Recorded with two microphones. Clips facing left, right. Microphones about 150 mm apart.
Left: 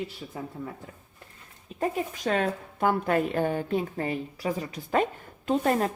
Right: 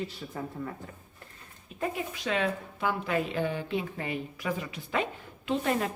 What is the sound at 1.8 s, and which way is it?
A woman's voice, 45° left (ahead or behind).